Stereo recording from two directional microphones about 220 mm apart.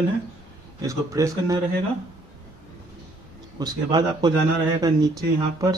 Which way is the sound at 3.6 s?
20° right (ahead or behind).